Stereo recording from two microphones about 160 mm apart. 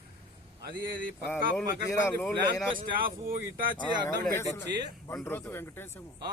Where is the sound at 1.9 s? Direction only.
15° left (ahead or behind).